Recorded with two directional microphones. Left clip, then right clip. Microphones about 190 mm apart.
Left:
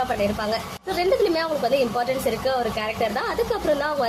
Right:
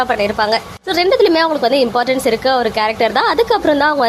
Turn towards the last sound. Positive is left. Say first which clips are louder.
# right 9 dB
turn(degrees=-35)  # may be behind; listen again after turning